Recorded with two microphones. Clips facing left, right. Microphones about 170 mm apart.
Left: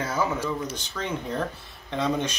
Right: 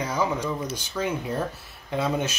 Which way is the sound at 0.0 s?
15° right (ahead or behind).